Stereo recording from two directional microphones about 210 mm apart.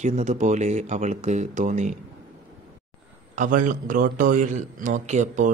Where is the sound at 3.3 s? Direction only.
40° right (ahead or behind).